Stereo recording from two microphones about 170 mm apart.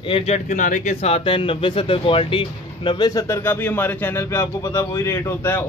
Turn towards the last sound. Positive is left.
turn(degrees=10)  # may be behind; listen again after turning